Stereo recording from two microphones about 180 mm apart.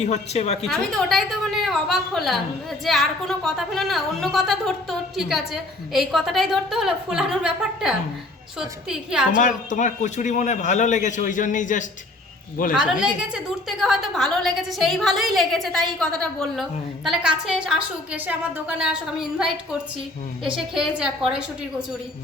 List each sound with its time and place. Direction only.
0.0 s speech: 40° left (ahead or behind)
0.6 s a woman's voice: centre (ahead or behind)
9.3 s a man's voice: 45° left (ahead or behind)
12.7 s a woman's voice: 5° right (ahead or behind)
20.6 s a woman's voice: 5° right (ahead or behind)